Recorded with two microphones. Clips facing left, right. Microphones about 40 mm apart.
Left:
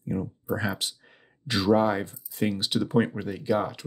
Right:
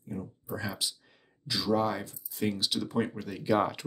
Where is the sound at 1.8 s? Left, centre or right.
Left.